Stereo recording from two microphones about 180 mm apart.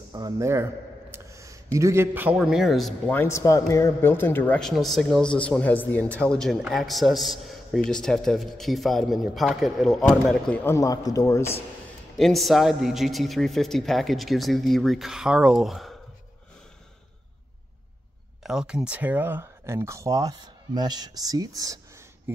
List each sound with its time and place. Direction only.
0.1 s speech: 20° right (ahead or behind); by 3.2 s centre (ahead or behind)
3.2 s a man's voice: 15° left (ahead or behind)
12.2 s a man's voice: centre (ahead or behind)
18.4 s speech: 5° right (ahead or behind); by 21.7 s 20° right (ahead or behind)